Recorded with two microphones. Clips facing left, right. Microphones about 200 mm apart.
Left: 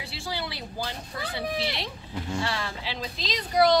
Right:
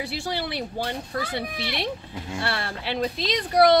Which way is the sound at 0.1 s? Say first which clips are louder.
Right 5 dB; 60° right (ahead or behind).